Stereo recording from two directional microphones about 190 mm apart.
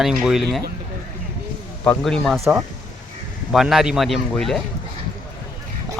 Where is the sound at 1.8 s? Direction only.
5° left (ahead or behind).